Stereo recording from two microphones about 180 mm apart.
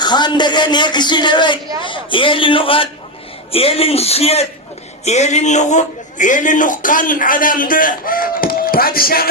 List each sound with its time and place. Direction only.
0.0 s a man's voice: 25° left (ahead or behind); by 9.3 s 55° left (ahead or behind)